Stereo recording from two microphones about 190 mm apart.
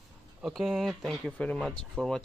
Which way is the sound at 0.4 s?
Centre (ahead or behind).